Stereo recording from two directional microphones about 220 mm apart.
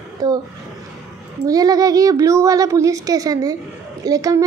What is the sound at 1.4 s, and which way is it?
Speech, 15° right (ahead or behind).